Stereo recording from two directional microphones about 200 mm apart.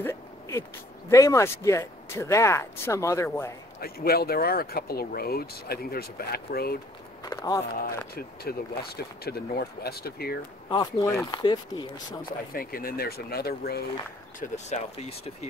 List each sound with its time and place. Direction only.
0.0 s a sound: 15° left (ahead or behind)
1.1 s speech: 15° left (ahead or behind)
3.8 s speech: 50° left (ahead or behind)
7.2 s speech: 15° left (ahead or behind)
7.7 s speech: 50° left (ahead or behind)
10.7 s speech: 20° left (ahead or behind)
12.2 s speech: 45° left (ahead or behind)
14.4 s speech: 35° left (ahead or behind)